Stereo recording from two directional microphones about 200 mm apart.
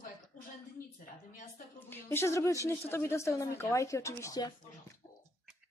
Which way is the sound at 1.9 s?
10° left (ahead or behind).